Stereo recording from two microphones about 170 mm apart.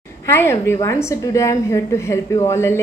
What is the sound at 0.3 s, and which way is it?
A woman's voice, 15° left (ahead or behind).